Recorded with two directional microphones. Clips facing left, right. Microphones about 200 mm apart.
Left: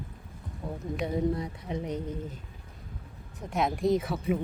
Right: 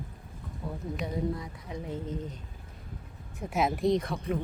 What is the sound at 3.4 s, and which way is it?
Speech, 5° right (ahead or behind).